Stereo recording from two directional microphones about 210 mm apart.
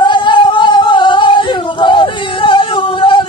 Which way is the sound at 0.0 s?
20° left (ahead or behind).